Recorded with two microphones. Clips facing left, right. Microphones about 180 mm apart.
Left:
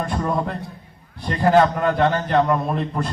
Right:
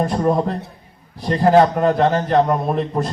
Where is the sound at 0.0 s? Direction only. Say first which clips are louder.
Right 5 dB; 35° right (ahead or behind).